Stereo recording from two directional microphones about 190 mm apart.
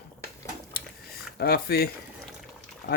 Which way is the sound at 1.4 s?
55° left (ahead or behind).